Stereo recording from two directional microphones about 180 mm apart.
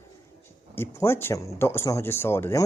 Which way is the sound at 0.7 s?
15° left (ahead or behind).